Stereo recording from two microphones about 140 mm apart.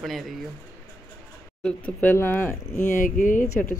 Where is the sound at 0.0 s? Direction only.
Centre (ahead or behind).